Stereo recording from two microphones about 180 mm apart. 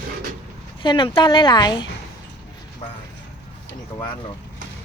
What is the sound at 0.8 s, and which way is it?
A woman's voice, 30° left (ahead or behind).